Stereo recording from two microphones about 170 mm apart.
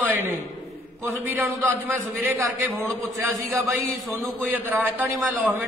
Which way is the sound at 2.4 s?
15° right (ahead or behind).